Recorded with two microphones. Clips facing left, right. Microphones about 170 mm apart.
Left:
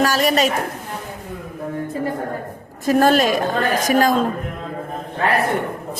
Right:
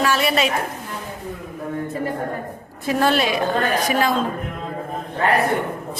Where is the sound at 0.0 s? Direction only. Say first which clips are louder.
Left 2 dB; 40° left (ahead or behind).